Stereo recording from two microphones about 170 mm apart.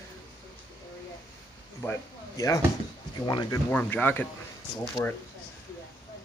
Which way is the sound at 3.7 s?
10° left (ahead or behind).